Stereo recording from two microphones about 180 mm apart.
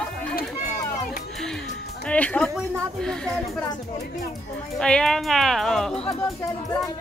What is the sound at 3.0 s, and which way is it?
Speech, 5° left (ahead or behind).